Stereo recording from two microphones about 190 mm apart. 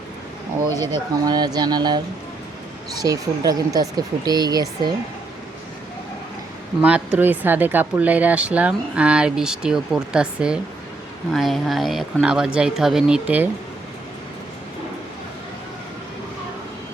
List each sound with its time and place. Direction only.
0.8 s speech: 20° right (ahead or behind)
3.0 s speech: 20° right (ahead or behind)
6.8 s speech: 5° right (ahead or behind)